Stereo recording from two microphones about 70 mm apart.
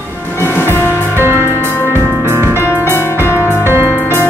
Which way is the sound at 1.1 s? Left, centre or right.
Right.